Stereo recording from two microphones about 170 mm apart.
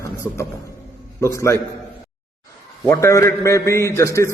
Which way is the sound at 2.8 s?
15° left (ahead or behind).